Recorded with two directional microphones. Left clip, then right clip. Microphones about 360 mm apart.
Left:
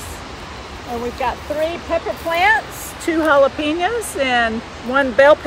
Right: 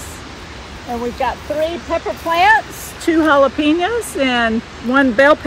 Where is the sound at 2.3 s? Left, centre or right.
Centre.